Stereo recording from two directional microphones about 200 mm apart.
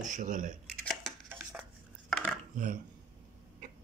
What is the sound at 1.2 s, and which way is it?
Dishes, 10° right (ahead or behind).